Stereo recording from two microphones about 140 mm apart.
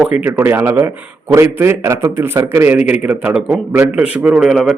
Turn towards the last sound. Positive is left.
turn(degrees=0)  # may be behind; listen again after turning